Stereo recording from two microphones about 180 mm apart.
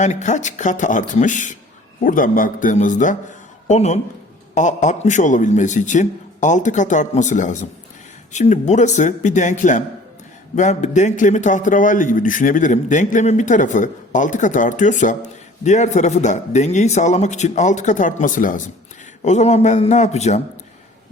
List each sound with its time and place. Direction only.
0.0 s a man's voice: 40° left (ahead or behind)